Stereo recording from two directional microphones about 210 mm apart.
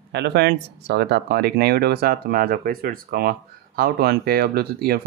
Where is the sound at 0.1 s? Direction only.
55° right (ahead or behind).